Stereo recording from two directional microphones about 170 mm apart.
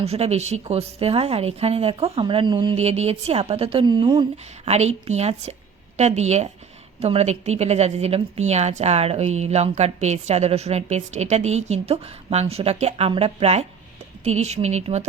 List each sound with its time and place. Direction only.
0.0 s a woman's voice: 35° right (ahead or behind)
2.7 s a woman's voice: 40° right (ahead or behind)
4.6 s a woman's voice: 40° right (ahead or behind)